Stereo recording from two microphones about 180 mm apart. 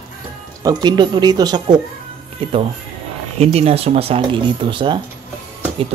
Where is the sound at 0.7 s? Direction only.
25° right (ahead or behind).